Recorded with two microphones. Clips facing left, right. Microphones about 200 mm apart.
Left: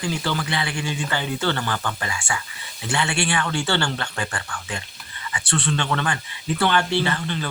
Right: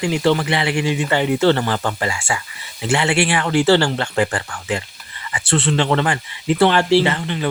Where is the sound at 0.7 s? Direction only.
65° right (ahead or behind).